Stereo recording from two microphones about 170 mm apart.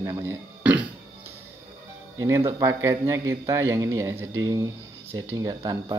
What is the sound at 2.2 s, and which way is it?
Speech, 20° right (ahead or behind).